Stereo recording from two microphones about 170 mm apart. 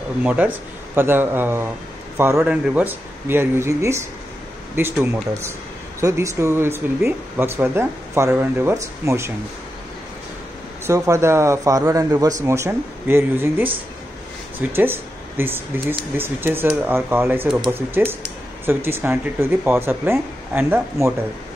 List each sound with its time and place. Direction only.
0.2 s speech: 10° right (ahead or behind)
10.9 s speech: 15° right (ahead or behind)
14.7 s speech: 15° right (ahead or behind)